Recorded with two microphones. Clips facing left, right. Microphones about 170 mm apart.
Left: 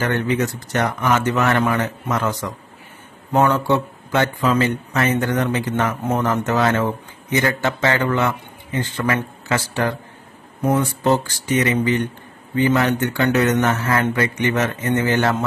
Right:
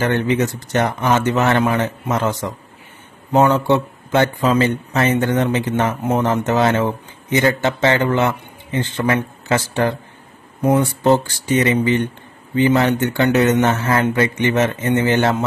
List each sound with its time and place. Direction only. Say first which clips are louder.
0.0 s speech: right 3 dB; 25° right (ahead or behind)